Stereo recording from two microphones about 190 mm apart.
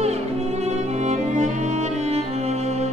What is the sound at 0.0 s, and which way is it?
Music, 35° right (ahead or behind).